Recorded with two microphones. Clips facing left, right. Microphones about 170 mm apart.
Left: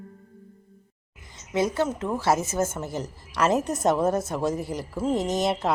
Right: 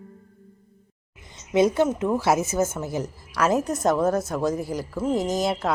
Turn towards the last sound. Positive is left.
turn(degrees=0)  # may be behind; listen again after turning